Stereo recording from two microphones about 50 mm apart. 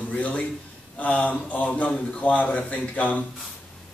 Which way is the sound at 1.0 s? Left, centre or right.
Left.